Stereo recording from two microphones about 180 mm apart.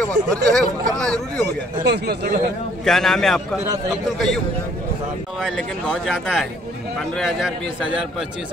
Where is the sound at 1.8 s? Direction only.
65° right (ahead or behind).